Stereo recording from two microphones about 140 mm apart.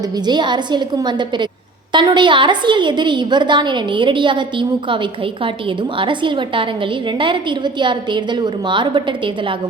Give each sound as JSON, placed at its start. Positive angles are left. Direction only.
{"t": 0.3, "sound": "a woman's voice", "side_deg": -30}